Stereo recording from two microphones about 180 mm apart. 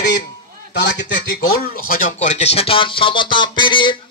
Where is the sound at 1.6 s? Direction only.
55° left (ahead or behind).